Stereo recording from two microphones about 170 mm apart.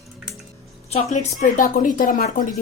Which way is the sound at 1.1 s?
50° left (ahead or behind).